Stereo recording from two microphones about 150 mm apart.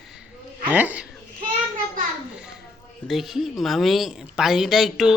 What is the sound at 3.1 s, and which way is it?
Speech, centre (ahead or behind).